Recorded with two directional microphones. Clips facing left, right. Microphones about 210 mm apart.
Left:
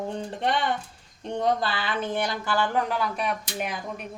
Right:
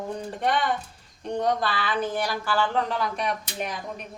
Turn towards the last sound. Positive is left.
turn(degrees=5)  # may be behind; listen again after turning